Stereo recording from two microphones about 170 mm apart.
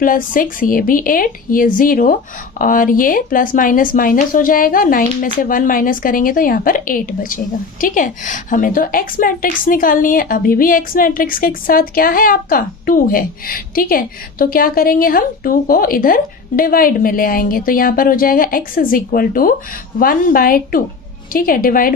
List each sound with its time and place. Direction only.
0.0 s a woman's voice: 55° left (ahead or behind)